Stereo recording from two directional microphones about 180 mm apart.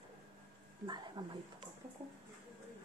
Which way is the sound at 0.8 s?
25° right (ahead or behind).